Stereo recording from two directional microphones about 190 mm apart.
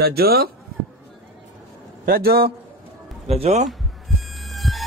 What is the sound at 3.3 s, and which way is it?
Speech, 35° right (ahead or behind).